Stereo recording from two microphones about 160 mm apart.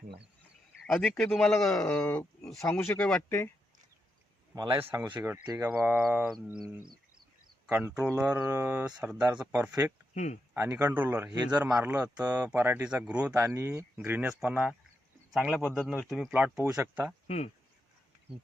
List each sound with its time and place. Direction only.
0.9 s speech: 5° left (ahead or behind)
4.5 s speech: 25° right (ahead or behind)
4.8 s speech: 15° right (ahead or behind)
5.7 s speech: 10° right (ahead or behind)
7.7 s speech: 10° right (ahead or behind)
10.2 s speech: 50° left (ahead or behind)
10.5 s speech: 15° right (ahead or behind)
13.3 s speech: 20° right (ahead or behind)
17.2 s speech: 40° left (ahead or behind)